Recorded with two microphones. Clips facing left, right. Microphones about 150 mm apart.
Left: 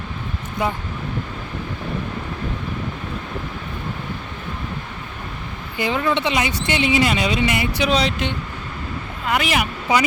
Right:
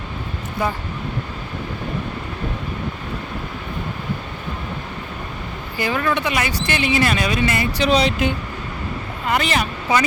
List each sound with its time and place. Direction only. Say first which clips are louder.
5.7 s speech: left 1 dB; 20° left (ahead or behind)
7.9 s speech: right 5 dB; centre (ahead or behind)